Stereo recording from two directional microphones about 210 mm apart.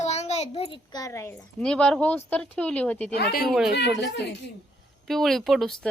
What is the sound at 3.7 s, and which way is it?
Speech, 55° left (ahead or behind).